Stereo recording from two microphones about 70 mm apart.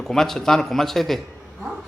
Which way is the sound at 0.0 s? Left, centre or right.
Centre.